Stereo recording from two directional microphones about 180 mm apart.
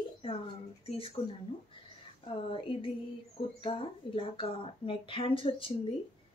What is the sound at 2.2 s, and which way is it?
A woman's voice, 30° left (ahead or behind).